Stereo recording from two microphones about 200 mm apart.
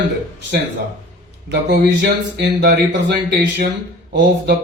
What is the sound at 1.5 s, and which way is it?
Speech, 55° right (ahead or behind).